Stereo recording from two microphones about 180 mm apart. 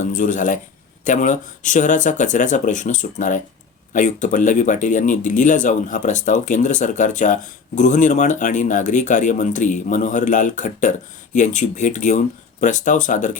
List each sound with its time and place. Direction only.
0.0 s speech: 45° left (ahead or behind)